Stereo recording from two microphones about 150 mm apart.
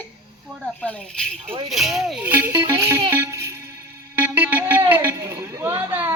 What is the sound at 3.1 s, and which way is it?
Music, 15° right (ahead or behind).